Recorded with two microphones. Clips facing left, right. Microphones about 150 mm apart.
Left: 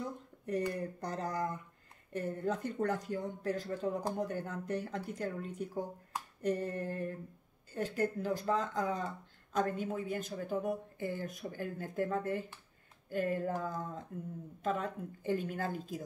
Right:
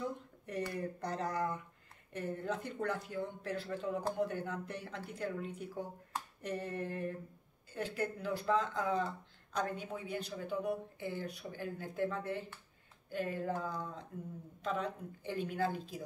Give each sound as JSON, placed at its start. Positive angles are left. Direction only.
{"t": 0.5, "sound": "speech", "side_deg": 40}